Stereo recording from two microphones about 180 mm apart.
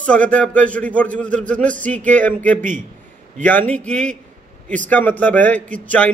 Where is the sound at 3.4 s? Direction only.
10° left (ahead or behind).